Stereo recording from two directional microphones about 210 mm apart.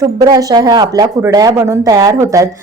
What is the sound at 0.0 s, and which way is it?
A woman's voice, 15° right (ahead or behind).